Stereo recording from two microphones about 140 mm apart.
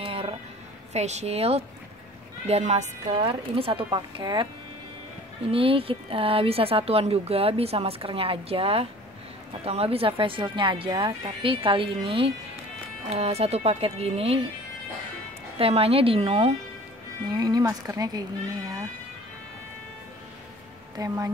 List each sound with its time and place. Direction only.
0.1 s music: 40° right (ahead or behind)
0.9 s speech: 50° right (ahead or behind)
3.2 s speech: 40° right (ahead or behind)
5.5 s speech: 40° right (ahead or behind)
15.5 s speech: 45° right (ahead or behind)
17.3 s speech: 25° right (ahead or behind)
20.9 s speech: 25° right (ahead or behind)